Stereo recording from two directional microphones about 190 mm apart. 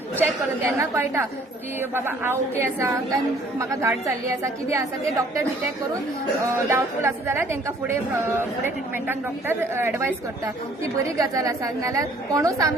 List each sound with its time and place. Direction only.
0.2 s a woman's voice: 10° right (ahead or behind)
6.7 s a woman's voice: 15° right (ahead or behind)